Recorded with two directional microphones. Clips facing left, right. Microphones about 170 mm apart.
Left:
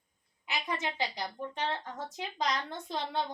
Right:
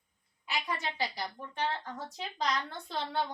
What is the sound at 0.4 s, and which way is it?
A woman's voice, 20° left (ahead or behind).